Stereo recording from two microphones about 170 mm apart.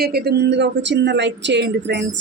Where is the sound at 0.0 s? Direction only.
70° right (ahead or behind).